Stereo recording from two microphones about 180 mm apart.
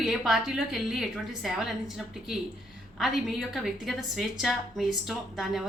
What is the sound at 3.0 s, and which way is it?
A woman's voice, centre (ahead or behind).